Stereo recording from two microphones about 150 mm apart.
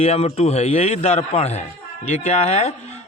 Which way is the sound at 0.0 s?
45° left (ahead or behind).